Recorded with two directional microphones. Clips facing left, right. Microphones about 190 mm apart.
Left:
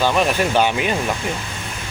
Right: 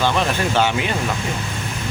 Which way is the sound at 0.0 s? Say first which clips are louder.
Left 2 dB; 15° left (ahead or behind).